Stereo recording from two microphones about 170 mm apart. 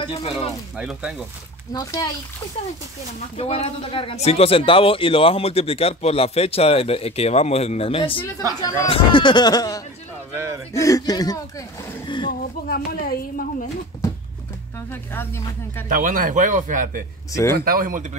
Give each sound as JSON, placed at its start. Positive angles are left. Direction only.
{"t": 0.0, "sound": "speech", "side_deg": 35}
{"t": 0.7, "sound": "speech", "side_deg": -5}
{"t": 1.7, "sound": "speech", "side_deg": 20}
{"t": 3.3, "sound": "speech", "side_deg": 35}
{"t": 10.3, "sound": "a man's voice", "side_deg": -15}
{"t": 10.7, "sound": "speech", "side_deg": 20}
{"t": 12.3, "sound": "speech", "side_deg": 60}
{"t": 14.9, "sound": "speech", "side_deg": 15}
{"t": 15.9, "sound": "speech", "side_deg": -50}